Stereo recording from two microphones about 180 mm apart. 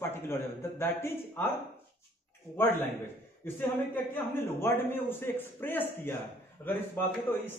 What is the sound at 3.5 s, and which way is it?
A man's voice, 10° left (ahead or behind).